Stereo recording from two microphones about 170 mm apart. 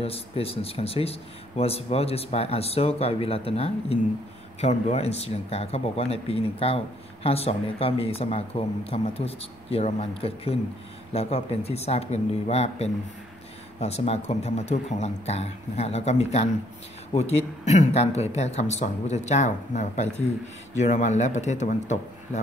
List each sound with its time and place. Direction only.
0.0 s a man's voice: 35° left (ahead or behind)